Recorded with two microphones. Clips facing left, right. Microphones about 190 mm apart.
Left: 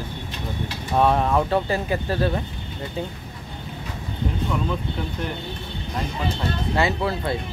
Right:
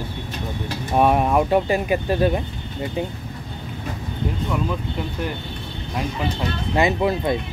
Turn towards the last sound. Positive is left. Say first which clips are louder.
# right 4 dB
turn(degrees=-15)  # may be behind; listen again after turning